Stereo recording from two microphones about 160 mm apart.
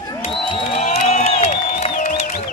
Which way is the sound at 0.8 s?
45° left (ahead or behind).